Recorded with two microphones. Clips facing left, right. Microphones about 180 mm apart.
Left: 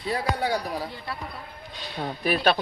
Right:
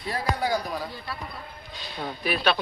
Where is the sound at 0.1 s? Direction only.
30° left (ahead or behind).